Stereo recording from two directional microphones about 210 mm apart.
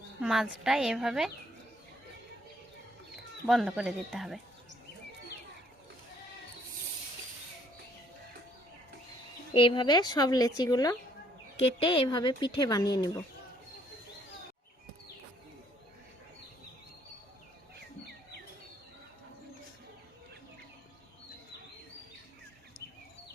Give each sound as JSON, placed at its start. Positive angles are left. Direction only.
{"t": 0.2, "sound": "a woman's voice", "side_deg": 0}
{"t": 3.4, "sound": "a woman's voice", "side_deg": 0}
{"t": 9.5, "sound": "speech", "side_deg": 25}